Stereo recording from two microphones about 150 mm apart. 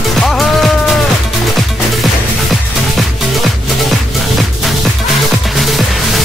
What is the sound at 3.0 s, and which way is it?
Music, centre (ahead or behind).